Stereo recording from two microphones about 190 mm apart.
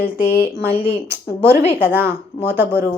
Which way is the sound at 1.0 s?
10° right (ahead or behind).